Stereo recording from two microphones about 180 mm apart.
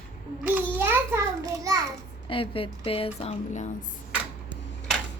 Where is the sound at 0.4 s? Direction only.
10° right (ahead or behind).